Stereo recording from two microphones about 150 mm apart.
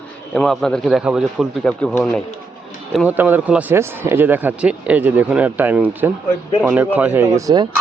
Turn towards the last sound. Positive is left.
turn(degrees=-25)  # may be behind; listen again after turning